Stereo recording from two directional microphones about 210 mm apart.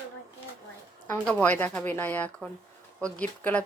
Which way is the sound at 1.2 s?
5° left (ahead or behind).